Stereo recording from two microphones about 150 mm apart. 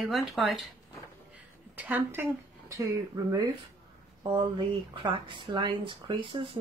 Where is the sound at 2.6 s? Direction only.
20° right (ahead or behind).